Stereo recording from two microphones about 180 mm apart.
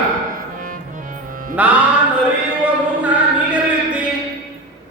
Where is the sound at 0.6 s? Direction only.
50° right (ahead or behind).